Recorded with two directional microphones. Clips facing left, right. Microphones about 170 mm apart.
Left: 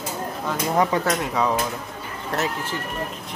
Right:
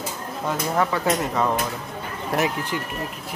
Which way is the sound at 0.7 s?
15° left (ahead or behind).